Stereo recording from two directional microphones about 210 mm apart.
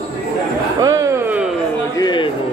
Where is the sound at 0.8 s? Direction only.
15° right (ahead or behind).